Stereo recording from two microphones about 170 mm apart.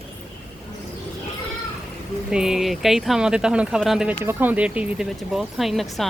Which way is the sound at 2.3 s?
5° right (ahead or behind).